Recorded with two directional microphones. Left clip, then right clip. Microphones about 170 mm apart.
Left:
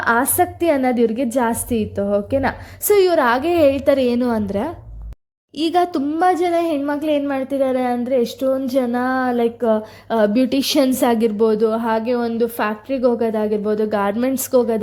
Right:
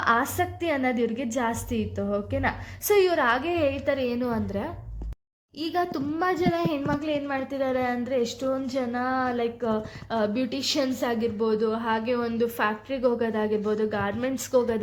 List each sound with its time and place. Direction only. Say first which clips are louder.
0.0 s a woman's voice: left 7 dB; 30° left (ahead or behind); by 6.0 s 50° left (ahead or behind)
6.1 s a woman's voice: left 9 dB; 35° left (ahead or behind)